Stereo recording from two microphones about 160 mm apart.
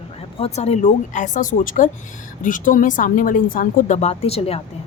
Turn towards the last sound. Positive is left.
turn(degrees=40)  # may be behind; listen again after turning